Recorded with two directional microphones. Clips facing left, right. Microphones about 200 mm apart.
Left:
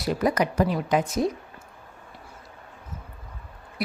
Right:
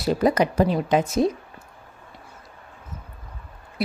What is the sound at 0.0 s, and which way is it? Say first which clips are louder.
Speech: right 4 dB; 30° right (ahead or behind).